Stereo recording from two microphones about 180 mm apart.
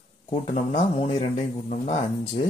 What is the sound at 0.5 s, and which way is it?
Speech, 25° left (ahead or behind).